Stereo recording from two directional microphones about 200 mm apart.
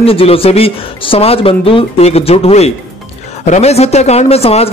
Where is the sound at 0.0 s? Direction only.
30° left (ahead or behind).